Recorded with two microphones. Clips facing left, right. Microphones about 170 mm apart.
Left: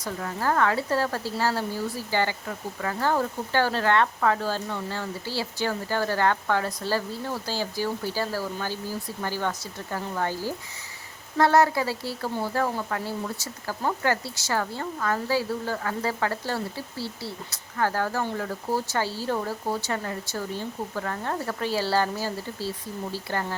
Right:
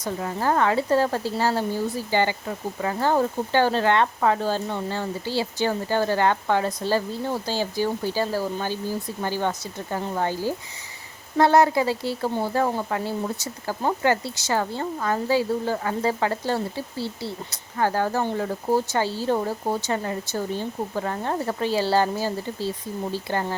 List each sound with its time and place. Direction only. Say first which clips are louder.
0.0 s speech: right 3 dB; 20° right (ahead or behind)